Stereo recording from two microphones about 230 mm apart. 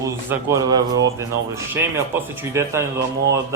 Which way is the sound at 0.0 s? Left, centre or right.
Centre.